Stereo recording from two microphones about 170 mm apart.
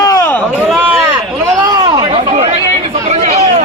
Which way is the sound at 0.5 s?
10° right (ahead or behind).